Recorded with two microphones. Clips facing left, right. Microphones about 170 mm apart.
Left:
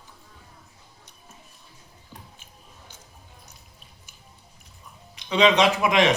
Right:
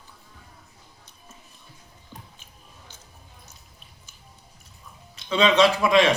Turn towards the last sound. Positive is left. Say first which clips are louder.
# right 1 dB
turn(degrees=20)  # may be behind; listen again after turning